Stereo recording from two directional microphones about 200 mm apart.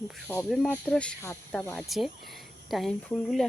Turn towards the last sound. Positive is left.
turn(degrees=5)  # may be behind; listen again after turning